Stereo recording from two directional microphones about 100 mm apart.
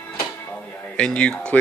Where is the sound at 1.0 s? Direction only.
10° left (ahead or behind).